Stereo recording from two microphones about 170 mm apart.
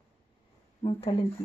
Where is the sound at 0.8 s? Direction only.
35° left (ahead or behind).